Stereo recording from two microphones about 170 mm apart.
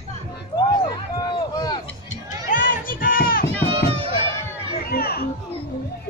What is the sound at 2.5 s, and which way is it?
Music, 55° left (ahead or behind).